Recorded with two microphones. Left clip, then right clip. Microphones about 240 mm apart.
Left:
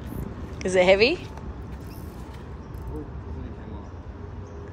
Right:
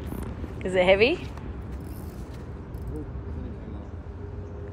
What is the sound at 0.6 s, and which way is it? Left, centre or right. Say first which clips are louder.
Speech: left 2 dB; centre.